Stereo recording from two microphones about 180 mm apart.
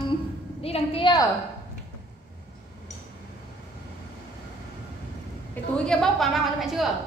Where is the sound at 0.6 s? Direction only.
30° left (ahead or behind).